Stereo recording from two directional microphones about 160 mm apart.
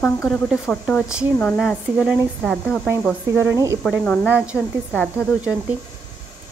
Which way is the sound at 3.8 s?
5° left (ahead or behind).